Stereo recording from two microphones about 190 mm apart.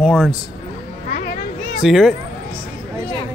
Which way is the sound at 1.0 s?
45° left (ahead or behind).